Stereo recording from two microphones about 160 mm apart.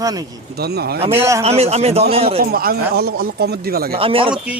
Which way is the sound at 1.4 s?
40° right (ahead or behind).